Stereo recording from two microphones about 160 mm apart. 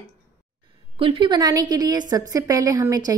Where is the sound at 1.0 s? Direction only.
30° right (ahead or behind).